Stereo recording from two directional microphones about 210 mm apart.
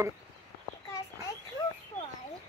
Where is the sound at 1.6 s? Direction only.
20° left (ahead or behind).